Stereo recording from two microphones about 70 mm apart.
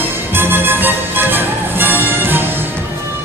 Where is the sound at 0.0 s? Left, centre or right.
Right.